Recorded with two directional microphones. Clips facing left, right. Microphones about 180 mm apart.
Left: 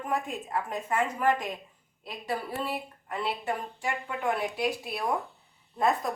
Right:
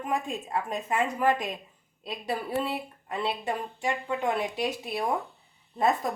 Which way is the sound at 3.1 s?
20° right (ahead or behind).